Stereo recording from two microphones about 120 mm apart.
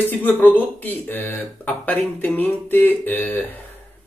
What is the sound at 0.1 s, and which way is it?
Speech, 15° left (ahead or behind).